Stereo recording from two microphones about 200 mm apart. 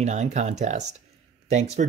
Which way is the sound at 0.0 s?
35° right (ahead or behind).